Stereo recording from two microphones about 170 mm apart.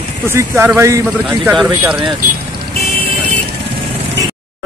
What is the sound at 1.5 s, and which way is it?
Speech, 5° right (ahead or behind).